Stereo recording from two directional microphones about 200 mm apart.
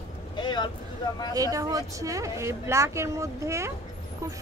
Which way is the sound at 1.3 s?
15° right (ahead or behind).